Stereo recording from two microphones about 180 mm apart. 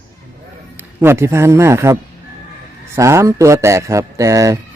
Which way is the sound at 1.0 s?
15° right (ahead or behind).